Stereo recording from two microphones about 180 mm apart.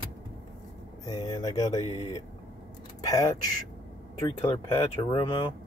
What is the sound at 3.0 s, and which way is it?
Speech, 20° left (ahead or behind).